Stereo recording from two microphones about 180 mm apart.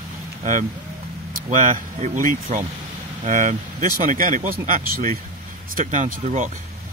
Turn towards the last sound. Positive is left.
turn(degrees=-45)  # may be behind; listen again after turning